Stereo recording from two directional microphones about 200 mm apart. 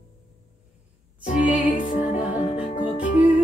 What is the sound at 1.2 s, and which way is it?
Music, 40° left (ahead or behind).